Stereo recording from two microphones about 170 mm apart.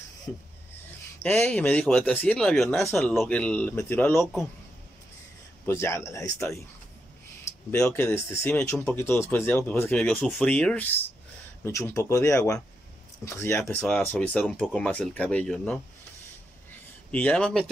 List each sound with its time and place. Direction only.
1.2 s speech: 10° left (ahead or behind)
4.2 s speech: centre (ahead or behind)
5.7 s speech: 15° left (ahead or behind)
7.7 s speech: 15° left (ahead or behind)
13.6 s speech: 5° left (ahead or behind)
17.1 s speech: 5° left (ahead or behind)